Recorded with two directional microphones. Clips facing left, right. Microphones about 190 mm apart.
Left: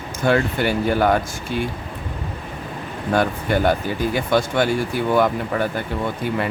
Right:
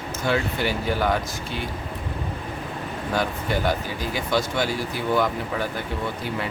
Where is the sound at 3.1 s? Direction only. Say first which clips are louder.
Left 6 dB; 55° left (ahead or behind).